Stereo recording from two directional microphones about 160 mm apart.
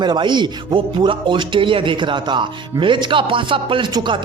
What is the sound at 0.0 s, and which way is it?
Speech, 30° right (ahead or behind).